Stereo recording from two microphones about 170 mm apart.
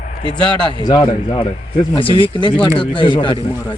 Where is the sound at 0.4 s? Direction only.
25° left (ahead or behind).